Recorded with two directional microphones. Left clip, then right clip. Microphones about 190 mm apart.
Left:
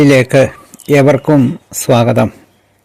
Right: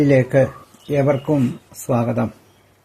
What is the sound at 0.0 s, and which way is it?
Speech, 30° left (ahead or behind).